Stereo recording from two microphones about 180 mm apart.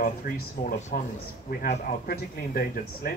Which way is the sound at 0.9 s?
55° left (ahead or behind).